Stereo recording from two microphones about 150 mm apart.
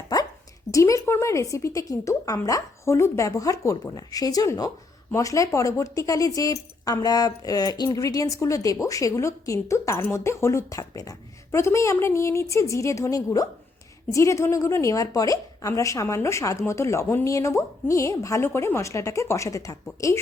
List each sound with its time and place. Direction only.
0.7 s a woman's voice: 20° left (ahead or behind)